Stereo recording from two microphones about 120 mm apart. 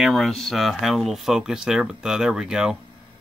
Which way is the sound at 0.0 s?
Centre (ahead or behind).